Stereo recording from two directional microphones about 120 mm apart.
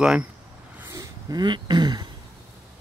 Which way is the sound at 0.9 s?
35° right (ahead or behind).